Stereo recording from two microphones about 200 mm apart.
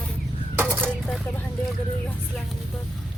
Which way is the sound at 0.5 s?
10° right (ahead or behind).